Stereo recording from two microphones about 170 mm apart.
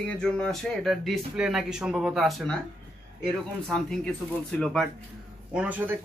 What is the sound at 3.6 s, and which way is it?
Speech, 5° left (ahead or behind).